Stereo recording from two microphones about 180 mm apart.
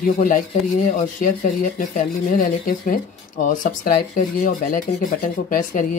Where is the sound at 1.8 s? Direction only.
45° left (ahead or behind).